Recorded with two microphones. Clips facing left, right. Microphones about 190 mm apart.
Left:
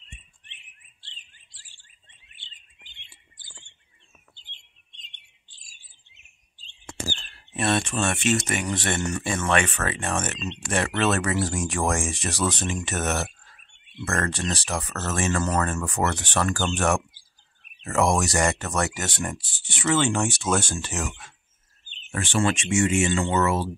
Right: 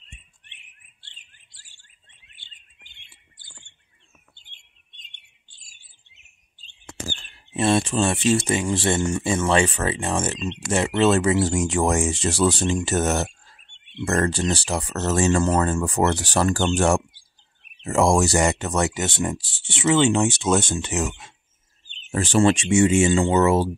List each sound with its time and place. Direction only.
7.5 s speech: 25° right (ahead or behind)
21.8 s speech: 35° right (ahead or behind)